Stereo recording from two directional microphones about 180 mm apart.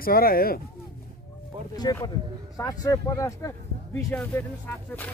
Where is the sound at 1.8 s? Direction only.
20° left (ahead or behind).